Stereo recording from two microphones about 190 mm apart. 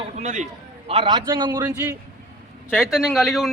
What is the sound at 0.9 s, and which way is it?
Speech, 25° right (ahead or behind).